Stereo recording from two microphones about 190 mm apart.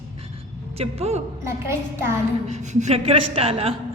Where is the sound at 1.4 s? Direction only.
15° right (ahead or behind).